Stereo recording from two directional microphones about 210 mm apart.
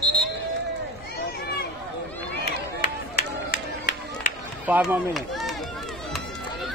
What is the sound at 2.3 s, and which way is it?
Run, 50° left (ahead or behind).